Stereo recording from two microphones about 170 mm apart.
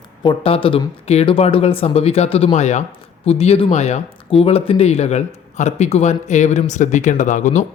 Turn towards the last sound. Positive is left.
turn(degrees=45)  # may be behind; listen again after turning